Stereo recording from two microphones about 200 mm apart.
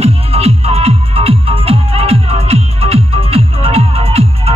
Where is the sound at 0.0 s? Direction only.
30° right (ahead or behind).